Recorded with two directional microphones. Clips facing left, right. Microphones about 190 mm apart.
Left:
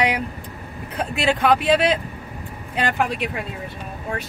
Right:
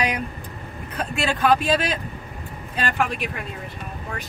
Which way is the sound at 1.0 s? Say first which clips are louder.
Left 2 dB; 20° left (ahead or behind).